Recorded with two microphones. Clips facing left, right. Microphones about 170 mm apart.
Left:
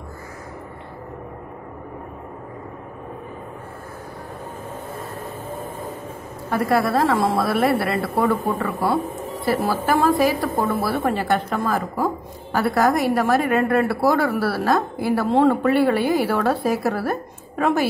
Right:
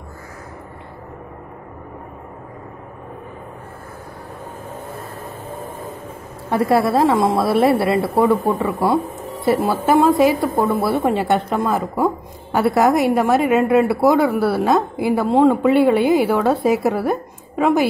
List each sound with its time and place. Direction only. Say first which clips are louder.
6.5 s a woman's voice: right 3 dB; 25° right (ahead or behind)